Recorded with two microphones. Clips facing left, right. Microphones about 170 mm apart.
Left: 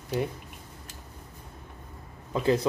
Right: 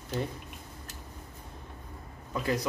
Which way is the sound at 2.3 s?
25° left (ahead or behind).